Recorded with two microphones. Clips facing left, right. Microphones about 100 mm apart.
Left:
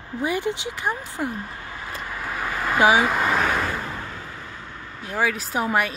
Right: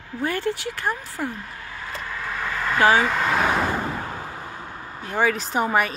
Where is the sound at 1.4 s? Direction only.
25° left (ahead or behind); by 3.4 s 10° left (ahead or behind).